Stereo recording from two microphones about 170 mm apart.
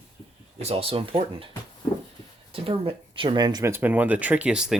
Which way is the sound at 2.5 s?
35° right (ahead or behind).